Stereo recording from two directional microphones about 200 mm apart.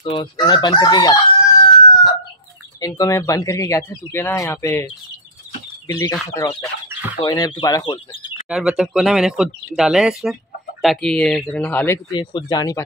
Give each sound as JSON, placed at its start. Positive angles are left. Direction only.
{"t": 0.0, "sound": "chicken", "side_deg": 25}
{"t": 2.8, "sound": "speech", "side_deg": 15}
{"t": 7.2, "sound": "chicken", "side_deg": 20}
{"t": 8.5, "sound": "speech", "side_deg": -5}
{"t": 12.1, "sound": "chicken", "side_deg": 20}